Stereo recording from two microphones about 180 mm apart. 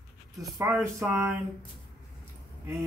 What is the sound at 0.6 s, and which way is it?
Speech, 15° right (ahead or behind).